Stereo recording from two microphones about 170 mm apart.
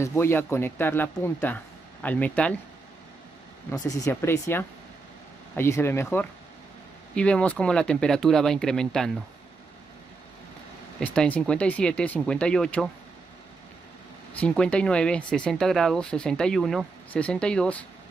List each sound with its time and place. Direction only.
0.0 s speech: 15° left (ahead or behind)
3.7 s speech: 20° left (ahead or behind); by 9.1 s 5° left (ahead or behind)
11.0 s speech: 10° left (ahead or behind)
14.5 s speech: 5° left (ahead or behind)